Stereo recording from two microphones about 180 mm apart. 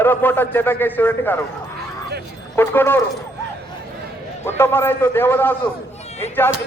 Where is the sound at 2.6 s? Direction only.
10° left (ahead or behind).